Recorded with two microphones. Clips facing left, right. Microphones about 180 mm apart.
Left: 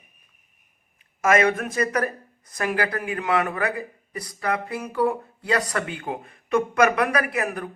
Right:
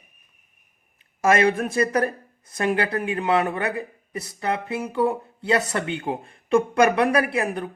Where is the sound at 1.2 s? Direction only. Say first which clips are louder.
Right 1 dB; 30° right (ahead or behind).